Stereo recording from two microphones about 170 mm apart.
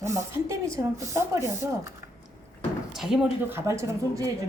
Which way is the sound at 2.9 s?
Centre (ahead or behind).